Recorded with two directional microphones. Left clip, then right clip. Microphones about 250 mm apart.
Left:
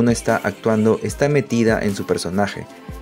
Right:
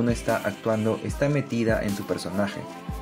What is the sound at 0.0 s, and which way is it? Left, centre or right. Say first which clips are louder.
Speech: left 7 dB; left.